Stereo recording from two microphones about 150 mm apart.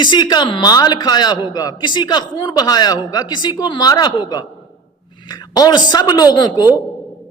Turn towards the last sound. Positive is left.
turn(degrees=30)  # may be behind; listen again after turning